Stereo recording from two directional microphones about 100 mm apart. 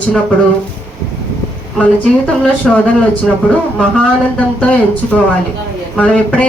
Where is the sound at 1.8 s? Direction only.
10° left (ahead or behind).